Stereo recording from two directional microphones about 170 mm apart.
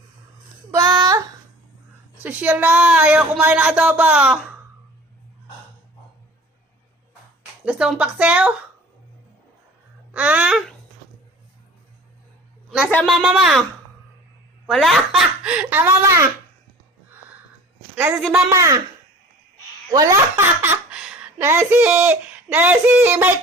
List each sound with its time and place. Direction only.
0.7 s child singing: 20° right (ahead or behind)
2.2 s speech: 10° right (ahead or behind)
7.6 s speech: 5° right (ahead or behind)
10.1 s speech: 10° right (ahead or behind)
12.7 s a woman's voice: 5° left (ahead or behind)
14.7 s speech: centre (ahead or behind); by 16.3 s 15° right (ahead or behind)
18.4 s speech: 20° right (ahead or behind)
19.9 s speech: 20° right (ahead or behind)